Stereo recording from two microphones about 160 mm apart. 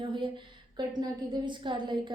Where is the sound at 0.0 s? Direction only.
30° right (ahead or behind).